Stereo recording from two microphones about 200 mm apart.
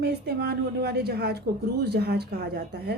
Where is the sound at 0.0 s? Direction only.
50° right (ahead or behind).